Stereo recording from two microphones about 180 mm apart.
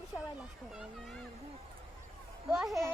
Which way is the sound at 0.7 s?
5° right (ahead or behind).